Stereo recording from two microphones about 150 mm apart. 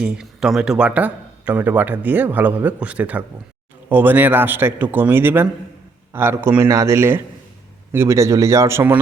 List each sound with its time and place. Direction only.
0.0 s speech: 5° right (ahead or behind)